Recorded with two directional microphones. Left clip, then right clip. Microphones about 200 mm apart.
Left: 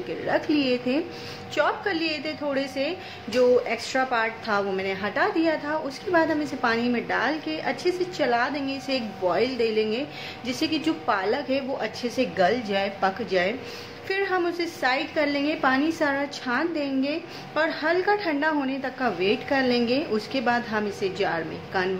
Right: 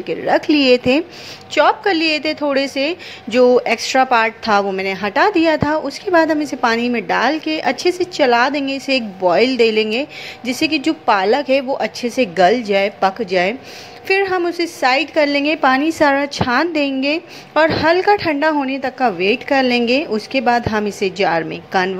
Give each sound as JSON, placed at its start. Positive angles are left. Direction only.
{"t": 0.3, "sound": "a woman's voice", "side_deg": -45}